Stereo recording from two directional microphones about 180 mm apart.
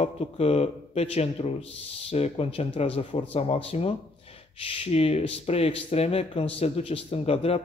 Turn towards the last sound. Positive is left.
turn(degrees=35)  # may be behind; listen again after turning